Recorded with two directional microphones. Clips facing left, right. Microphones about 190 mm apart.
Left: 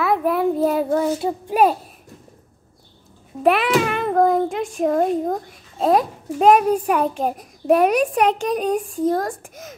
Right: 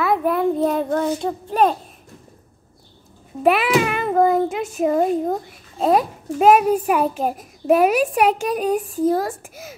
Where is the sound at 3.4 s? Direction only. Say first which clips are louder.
Even; 5° right (ahead or behind).